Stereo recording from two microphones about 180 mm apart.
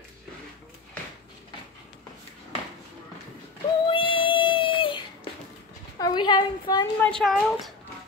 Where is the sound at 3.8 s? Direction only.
30° left (ahead or behind).